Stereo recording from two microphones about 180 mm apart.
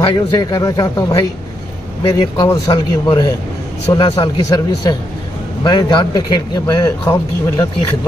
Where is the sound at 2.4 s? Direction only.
20° left (ahead or behind).